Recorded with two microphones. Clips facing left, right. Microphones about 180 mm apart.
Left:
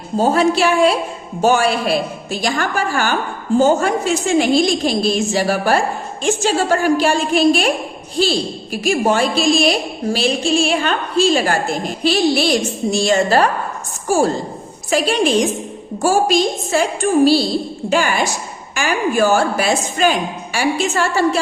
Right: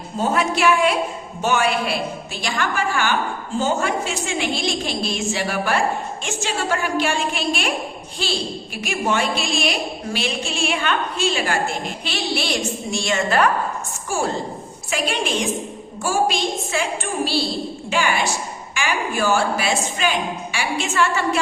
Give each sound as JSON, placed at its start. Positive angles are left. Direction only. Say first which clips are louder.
{"t": 0.2, "sound": "a woman's voice", "louder": "left 6 dB", "side_deg": 30}